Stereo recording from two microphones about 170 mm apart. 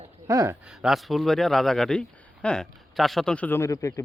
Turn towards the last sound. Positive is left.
turn(degrees=20)  # may be behind; listen again after turning